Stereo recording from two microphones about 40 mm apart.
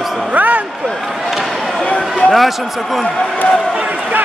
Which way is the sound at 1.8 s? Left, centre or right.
Left.